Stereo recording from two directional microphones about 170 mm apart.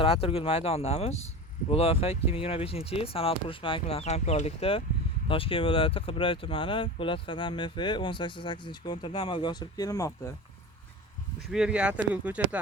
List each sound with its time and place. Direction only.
0.0 s speech: 35° left (ahead or behind)
11.5 s speech: 5° right (ahead or behind)